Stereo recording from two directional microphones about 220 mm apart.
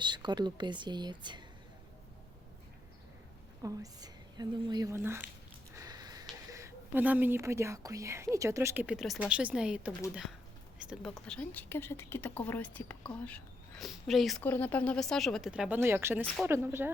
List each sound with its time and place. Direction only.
0.0 s speech: 20° right (ahead or behind)
3.6 s speech: 15° right (ahead or behind)
5.7 s sniff: 15° right (ahead or behind)
6.5 s a woman's voice: 15° right (ahead or behind)